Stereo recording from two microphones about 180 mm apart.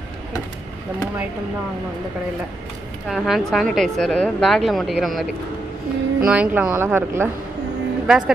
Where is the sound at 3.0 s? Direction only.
Centre (ahead or behind).